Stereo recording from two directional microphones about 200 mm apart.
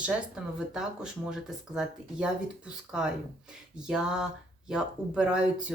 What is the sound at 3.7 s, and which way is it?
Speech, 5° right (ahead or behind).